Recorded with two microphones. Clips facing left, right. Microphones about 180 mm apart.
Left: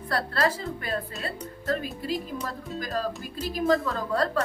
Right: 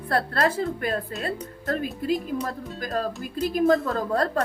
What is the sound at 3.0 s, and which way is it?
A woman's voice, 50° right (ahead or behind).